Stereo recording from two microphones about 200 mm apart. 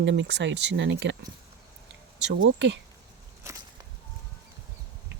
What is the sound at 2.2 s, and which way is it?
Speech, 75° right (ahead or behind).